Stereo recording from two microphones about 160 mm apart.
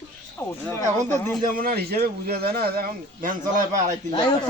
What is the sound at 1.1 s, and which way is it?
Speech, 15° left (ahead or behind).